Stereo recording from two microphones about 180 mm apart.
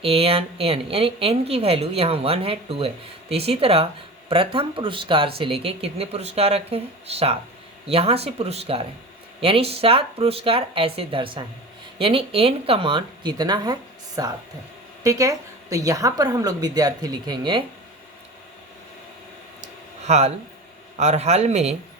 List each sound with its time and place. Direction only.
0.0 s a woman's voice: 35° right (ahead or behind)
19.6 s a sound: 40° right (ahead or behind)
21.0 s speech: 40° right (ahead or behind)